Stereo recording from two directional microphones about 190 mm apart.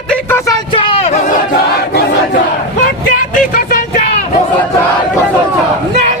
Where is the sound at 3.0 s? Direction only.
45° left (ahead or behind).